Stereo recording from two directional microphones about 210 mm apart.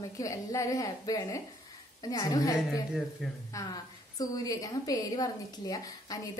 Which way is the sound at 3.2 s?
Centre (ahead or behind).